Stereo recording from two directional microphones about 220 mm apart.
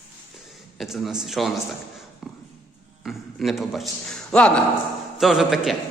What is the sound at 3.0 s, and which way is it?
A man's voice, centre (ahead or behind).